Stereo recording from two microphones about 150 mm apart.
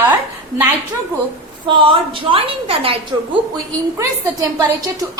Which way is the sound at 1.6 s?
35° right (ahead or behind).